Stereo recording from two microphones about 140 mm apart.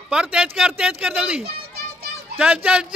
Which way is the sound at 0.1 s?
5° right (ahead or behind).